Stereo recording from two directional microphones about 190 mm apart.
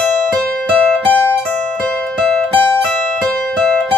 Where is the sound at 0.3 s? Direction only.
5° left (ahead or behind).